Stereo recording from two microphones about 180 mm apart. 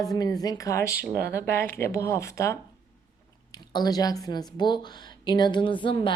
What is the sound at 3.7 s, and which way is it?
Speech, 20° left (ahead or behind).